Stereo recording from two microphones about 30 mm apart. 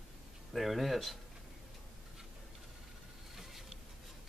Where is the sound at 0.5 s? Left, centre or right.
Centre.